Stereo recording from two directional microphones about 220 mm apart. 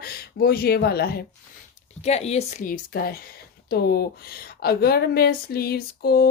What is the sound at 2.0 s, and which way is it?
A woman's voice, 30° left (ahead or behind).